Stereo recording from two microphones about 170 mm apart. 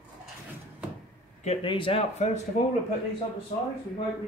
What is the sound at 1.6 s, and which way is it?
Speech, 30° left (ahead or behind).